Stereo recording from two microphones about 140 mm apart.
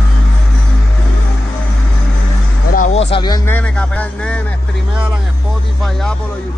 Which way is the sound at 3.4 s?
10° left (ahead or behind).